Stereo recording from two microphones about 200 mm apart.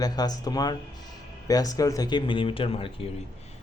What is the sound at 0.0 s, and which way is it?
Speech, 20° left (ahead or behind).